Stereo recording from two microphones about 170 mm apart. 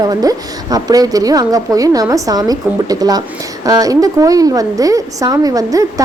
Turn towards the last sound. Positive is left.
turn(degrees=-20)  # may be behind; listen again after turning